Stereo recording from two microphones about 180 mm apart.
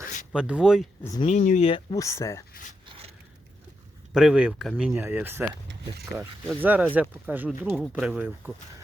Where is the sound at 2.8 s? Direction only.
30° right (ahead or behind).